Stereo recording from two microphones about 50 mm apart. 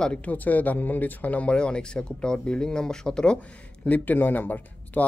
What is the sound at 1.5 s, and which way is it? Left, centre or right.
Speech, centre.